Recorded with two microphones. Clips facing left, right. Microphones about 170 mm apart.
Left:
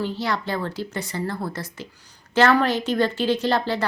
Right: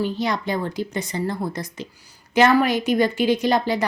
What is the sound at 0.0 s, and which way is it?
A woman's voice, 15° right (ahead or behind).